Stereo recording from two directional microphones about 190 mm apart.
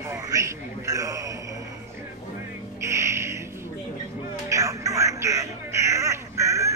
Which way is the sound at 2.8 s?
15° right (ahead or behind).